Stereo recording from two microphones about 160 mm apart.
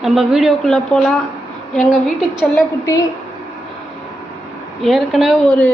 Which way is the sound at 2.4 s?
20° left (ahead or behind).